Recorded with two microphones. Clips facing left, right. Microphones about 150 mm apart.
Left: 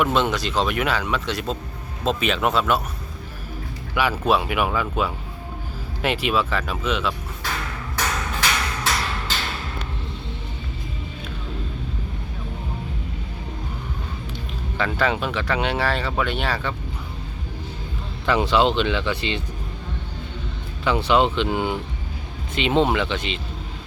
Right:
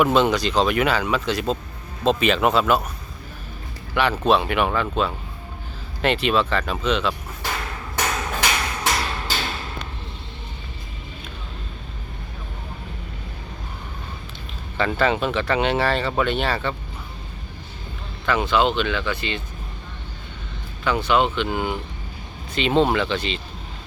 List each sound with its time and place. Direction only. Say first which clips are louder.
0.0 s speech: right 3 dB; centre (ahead or behind)
3.9 s speech: right 2 dB; 10° left (ahead or behind)
8.4 s a sound: right 1 dB; 15° right (ahead or behind)
14.9 s speech: right 3 dB; 10° left (ahead or behind)
18.3 s speech: left 1 dB; 30° left (ahead or behind)
20.8 s speech: left 1 dB; 25° left (ahead or behind)